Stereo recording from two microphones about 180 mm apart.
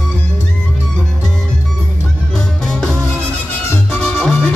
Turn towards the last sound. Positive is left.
turn(degrees=5)  # may be behind; listen again after turning